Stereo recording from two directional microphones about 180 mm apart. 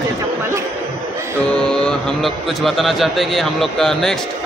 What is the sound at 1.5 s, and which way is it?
A man's voice, 5° left (ahead or behind).